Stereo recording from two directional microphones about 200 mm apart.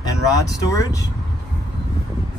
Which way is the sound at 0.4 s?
15° left (ahead or behind).